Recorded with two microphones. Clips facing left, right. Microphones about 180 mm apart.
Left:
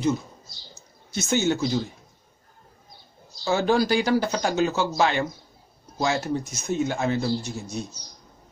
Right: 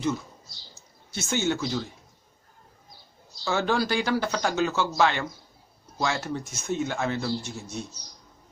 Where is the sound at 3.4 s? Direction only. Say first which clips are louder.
Left 4 dB; 15° left (ahead or behind).